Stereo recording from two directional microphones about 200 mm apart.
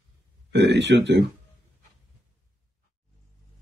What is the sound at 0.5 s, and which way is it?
Speech, 60° right (ahead or behind).